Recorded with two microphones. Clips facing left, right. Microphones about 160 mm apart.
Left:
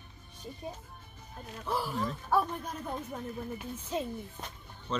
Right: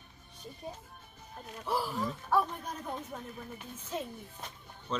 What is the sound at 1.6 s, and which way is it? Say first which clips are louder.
Speech: even; 5° right (ahead or behind).